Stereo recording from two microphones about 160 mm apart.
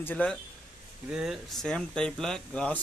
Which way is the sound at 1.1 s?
5° right (ahead or behind).